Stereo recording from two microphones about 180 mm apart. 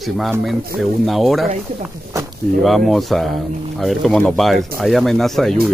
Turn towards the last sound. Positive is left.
turn(degrees=0)  # may be behind; listen again after turning